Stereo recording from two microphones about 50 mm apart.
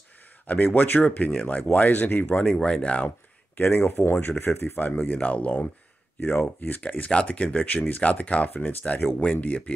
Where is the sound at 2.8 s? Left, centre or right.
Left.